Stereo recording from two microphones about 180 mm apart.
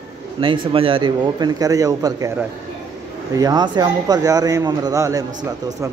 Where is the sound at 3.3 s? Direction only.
20° right (ahead or behind).